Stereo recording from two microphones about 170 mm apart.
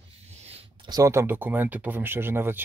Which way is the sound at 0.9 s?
20° right (ahead or behind).